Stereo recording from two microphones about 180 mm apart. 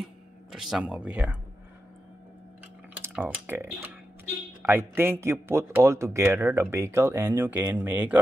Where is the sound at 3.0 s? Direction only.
10° right (ahead or behind).